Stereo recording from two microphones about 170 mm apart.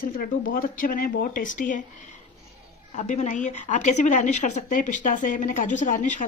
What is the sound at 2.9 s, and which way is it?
A woman's voice, 45° left (ahead or behind).